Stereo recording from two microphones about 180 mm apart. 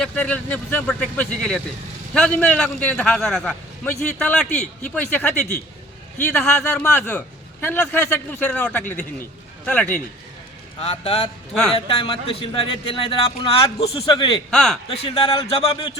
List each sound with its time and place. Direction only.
0.0 s a man's voice: 5° left (ahead or behind)
6.3 s a man's voice: 5° left (ahead or behind)
10.8 s a man's voice: 35° left (ahead or behind)
14.5 s a man's voice: 5° left (ahead or behind)
14.8 s speech: 30° left (ahead or behind)